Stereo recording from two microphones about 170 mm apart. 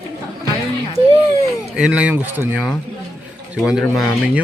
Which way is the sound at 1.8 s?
5° right (ahead or behind).